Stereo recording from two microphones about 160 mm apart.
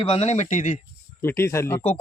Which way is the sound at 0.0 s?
40° left (ahead or behind).